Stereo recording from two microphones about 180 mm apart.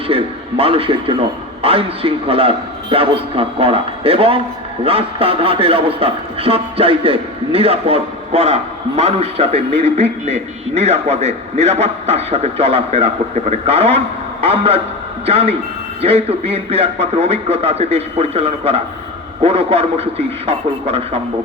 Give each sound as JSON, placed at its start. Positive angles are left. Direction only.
{"t": 0.1, "sound": "music", "side_deg": -30}
{"t": 1.6, "sound": "a man's voice", "side_deg": -30}